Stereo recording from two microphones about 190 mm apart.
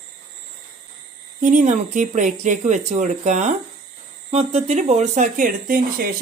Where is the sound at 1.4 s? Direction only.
40° right (ahead or behind).